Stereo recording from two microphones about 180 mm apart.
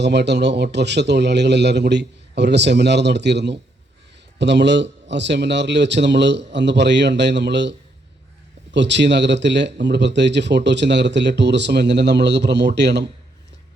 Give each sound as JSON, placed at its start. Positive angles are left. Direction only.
{"t": 0.0, "sound": "a man's voice", "side_deg": -70}